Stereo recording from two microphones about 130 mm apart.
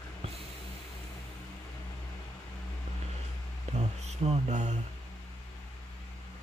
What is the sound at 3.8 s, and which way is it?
Mantra, 60° right (ahead or behind).